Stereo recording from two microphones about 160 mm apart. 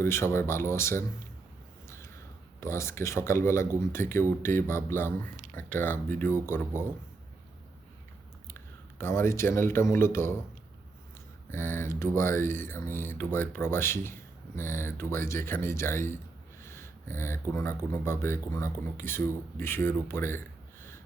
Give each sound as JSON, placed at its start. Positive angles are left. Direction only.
{"t": 0.0, "sound": "speech", "side_deg": 15}
{"t": 2.6, "sound": "speech", "side_deg": 15}
{"t": 8.4, "sound": "speech", "side_deg": 15}
{"t": 11.5, "sound": "speech", "side_deg": 15}